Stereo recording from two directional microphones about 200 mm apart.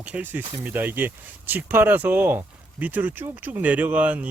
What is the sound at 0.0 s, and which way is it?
Speech, 5° right (ahead or behind).